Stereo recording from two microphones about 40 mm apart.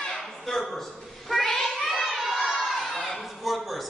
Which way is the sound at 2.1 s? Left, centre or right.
Centre.